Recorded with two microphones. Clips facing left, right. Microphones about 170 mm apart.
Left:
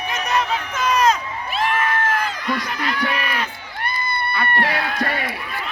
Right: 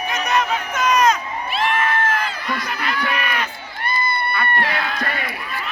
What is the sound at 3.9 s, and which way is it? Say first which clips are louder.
Crowd: right 4 dB; 60° left (ahead or behind).